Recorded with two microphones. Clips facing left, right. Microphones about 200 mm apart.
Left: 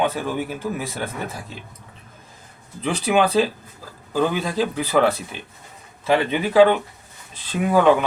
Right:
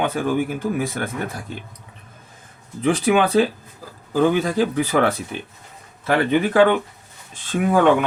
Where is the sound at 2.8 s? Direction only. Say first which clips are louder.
Right 2 dB; 50° right (ahead or behind).